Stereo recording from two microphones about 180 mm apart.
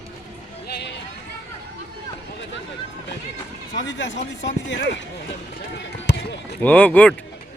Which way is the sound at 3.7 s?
90° left.